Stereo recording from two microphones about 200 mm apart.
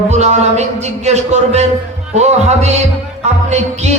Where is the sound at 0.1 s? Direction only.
35° right (ahead or behind).